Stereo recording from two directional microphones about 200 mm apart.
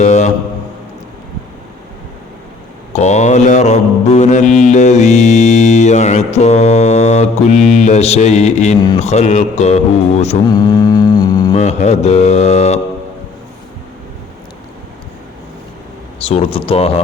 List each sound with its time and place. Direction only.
0.0 s a sound: 35° left (ahead or behind)
2.9 s mantra: 35° left (ahead or behind)
10.5 s mantra: 20° left (ahead or behind)
11.5 s mantra: 35° left (ahead or behind)
16.1 s speech: 30° left (ahead or behind)